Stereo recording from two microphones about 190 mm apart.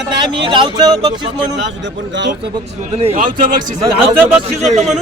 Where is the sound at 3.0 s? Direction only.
35° right (ahead or behind).